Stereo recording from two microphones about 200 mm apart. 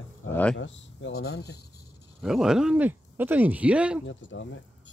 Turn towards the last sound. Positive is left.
turn(degrees=65)  # may be behind; listen again after turning